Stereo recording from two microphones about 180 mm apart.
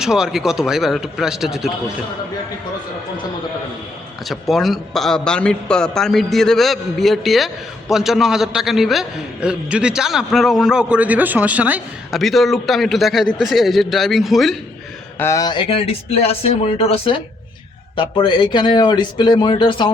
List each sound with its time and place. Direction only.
0.0 s a man's voice: 5° right (ahead or behind)
4.3 s a man's voice: centre (ahead or behind)
15.2 s speech: 20° left (ahead or behind)